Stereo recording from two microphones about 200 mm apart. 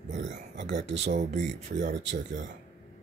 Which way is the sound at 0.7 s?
60° right (ahead or behind).